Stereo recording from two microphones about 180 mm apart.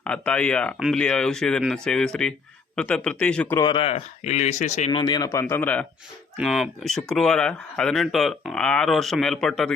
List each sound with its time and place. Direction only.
0.0 s a man's voice: 5° left (ahead or behind)
3.6 s speech: 25° left (ahead or behind)
4.9 s a man's voice: 25° left (ahead or behind); by 9.7 s 5° left (ahead or behind)